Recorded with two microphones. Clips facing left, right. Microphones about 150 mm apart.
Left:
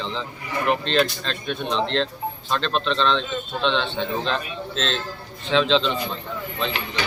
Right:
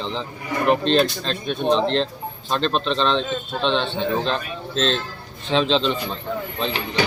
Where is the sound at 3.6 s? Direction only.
35° right (ahead or behind).